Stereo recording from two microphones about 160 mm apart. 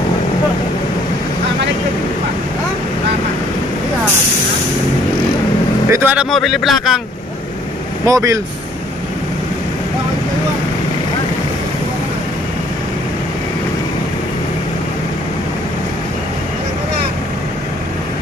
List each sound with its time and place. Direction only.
5.9 s vehicle: 15° right (ahead or behind)
6.1 s a man's voice: centre (ahead or behind)
8.1 s speech: 20° right (ahead or behind)